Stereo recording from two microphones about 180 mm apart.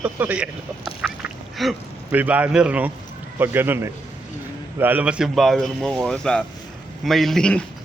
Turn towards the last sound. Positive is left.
turn(degrees=5)  # may be behind; listen again after turning